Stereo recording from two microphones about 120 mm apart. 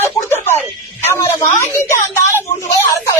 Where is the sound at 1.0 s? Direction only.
20° left (ahead or behind).